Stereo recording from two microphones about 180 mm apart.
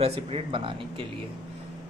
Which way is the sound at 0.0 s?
35° right (ahead or behind).